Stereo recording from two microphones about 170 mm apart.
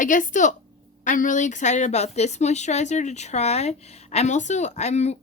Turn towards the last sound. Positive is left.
turn(degrees=40)  # may be behind; listen again after turning